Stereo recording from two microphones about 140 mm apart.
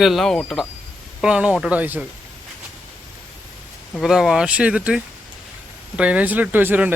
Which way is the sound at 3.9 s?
Centre (ahead or behind).